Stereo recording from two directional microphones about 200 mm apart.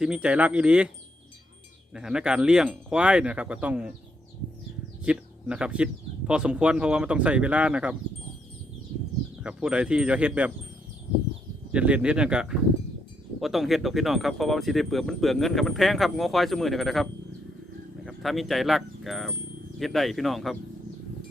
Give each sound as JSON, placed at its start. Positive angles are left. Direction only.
{"t": 0.0, "sound": "speech", "side_deg": -5}
{"t": 1.9, "sound": "speech", "side_deg": -5}
{"t": 5.0, "sound": "speech", "side_deg": -5}
{"t": 9.4, "sound": "speech", "side_deg": -5}
{"t": 11.7, "sound": "speech", "side_deg": -5}